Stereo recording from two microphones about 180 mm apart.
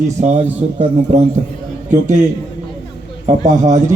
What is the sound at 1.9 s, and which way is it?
Speech, 45° right (ahead or behind).